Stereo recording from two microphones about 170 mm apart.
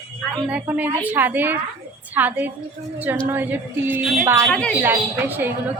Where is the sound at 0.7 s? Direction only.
10° right (ahead or behind).